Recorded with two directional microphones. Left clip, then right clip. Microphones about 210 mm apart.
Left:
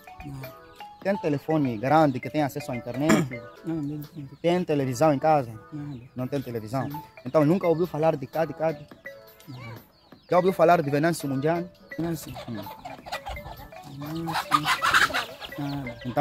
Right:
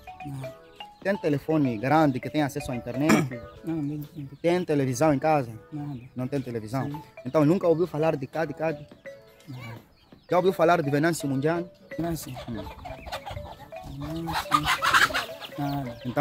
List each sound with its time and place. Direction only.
1.0 s speech: centre (ahead or behind)
3.7 s speech: 15° right (ahead or behind)
4.4 s speech: 5° left (ahead or behind)
10.3 s speech: 5° left (ahead or behind)
12.4 s music: 25° left (ahead or behind)
13.9 s speech: 20° left (ahead or behind); by 16.2 s centre (ahead or behind)